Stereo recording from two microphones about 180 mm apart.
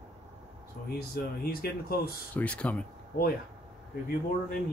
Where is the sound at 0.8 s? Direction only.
60° left (ahead or behind).